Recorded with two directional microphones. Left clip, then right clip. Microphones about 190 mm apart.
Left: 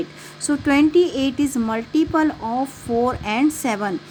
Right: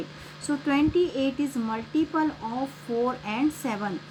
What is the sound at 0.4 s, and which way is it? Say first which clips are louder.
A woman's voice: left 7 dB; 60° left (ahead or behind).